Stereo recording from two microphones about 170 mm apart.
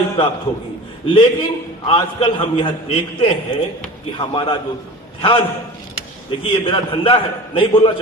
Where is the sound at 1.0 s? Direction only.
30° left (ahead or behind).